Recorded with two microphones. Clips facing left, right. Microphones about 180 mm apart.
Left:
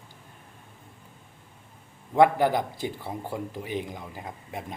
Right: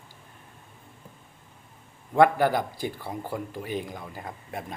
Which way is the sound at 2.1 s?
20° left (ahead or behind).